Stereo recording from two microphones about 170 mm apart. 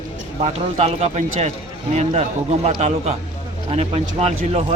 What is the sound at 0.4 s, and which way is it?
Speech, 40° right (ahead or behind).